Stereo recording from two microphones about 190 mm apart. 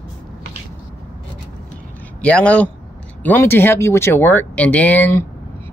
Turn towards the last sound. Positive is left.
turn(degrees=10)  # may be behind; listen again after turning